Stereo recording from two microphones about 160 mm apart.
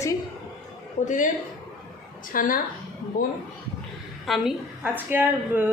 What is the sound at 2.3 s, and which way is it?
Speech, 60° left (ahead or behind).